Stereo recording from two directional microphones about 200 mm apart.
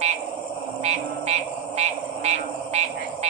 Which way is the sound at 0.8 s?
30° right (ahead or behind).